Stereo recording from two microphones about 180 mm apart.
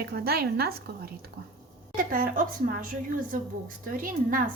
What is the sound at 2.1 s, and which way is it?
Speech, 50° right (ahead or behind).